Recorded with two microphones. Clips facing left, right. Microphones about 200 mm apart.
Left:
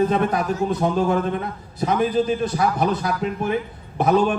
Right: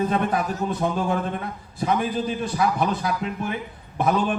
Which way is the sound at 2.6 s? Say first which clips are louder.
Left 2 dB; 45° left (ahead or behind).